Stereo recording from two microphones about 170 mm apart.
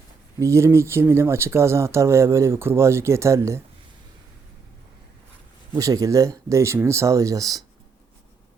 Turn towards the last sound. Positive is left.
turn(degrees=-20)  # may be behind; listen again after turning